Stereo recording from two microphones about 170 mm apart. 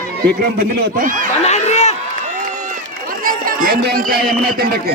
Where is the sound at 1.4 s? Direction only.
40° left (ahead or behind).